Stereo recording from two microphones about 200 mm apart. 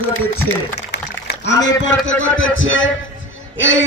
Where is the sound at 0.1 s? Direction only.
70° left (ahead or behind).